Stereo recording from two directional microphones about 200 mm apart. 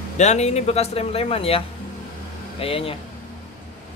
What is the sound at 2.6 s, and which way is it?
Speech, 30° left (ahead or behind).